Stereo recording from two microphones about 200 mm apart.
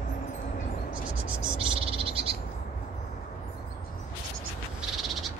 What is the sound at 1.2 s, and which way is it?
Frog, 25° right (ahead or behind).